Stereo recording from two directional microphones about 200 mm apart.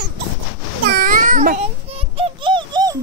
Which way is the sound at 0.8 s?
45° right (ahead or behind).